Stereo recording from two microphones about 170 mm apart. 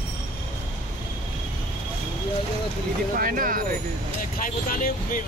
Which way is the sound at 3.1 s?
55° right (ahead or behind).